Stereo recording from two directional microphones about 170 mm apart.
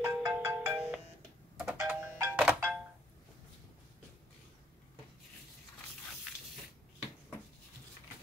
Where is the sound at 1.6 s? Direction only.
5° right (ahead or behind).